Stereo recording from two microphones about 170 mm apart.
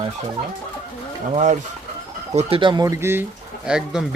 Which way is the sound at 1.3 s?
40° right (ahead or behind).